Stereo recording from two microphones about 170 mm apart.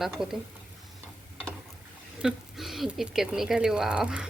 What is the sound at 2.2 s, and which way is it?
Speech, centre (ahead or behind).